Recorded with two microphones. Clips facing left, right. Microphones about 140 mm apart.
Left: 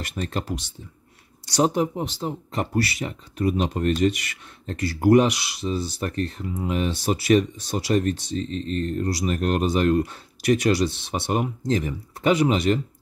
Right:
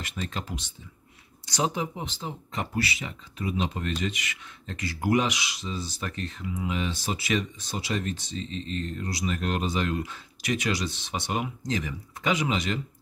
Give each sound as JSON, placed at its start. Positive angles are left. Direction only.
{"t": 0.1, "sound": "speech", "side_deg": 50}
{"t": 1.6, "sound": "speech", "side_deg": 45}
{"t": 5.9, "sound": "speech", "side_deg": 40}